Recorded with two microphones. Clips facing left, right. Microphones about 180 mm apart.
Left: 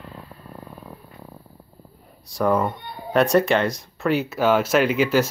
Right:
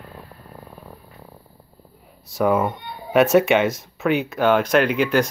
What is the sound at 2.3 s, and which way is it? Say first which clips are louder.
Speech: right 1 dB; 5° right (ahead or behind).